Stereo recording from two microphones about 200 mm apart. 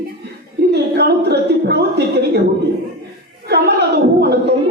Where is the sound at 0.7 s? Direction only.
55° right (ahead or behind).